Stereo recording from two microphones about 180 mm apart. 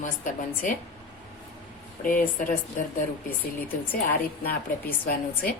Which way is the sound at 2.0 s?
50° left (ahead or behind).